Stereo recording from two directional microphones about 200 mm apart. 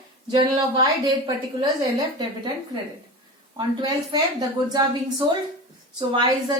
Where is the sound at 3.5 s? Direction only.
20° right (ahead or behind).